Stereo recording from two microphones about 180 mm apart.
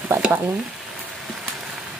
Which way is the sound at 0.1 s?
10° right (ahead or behind).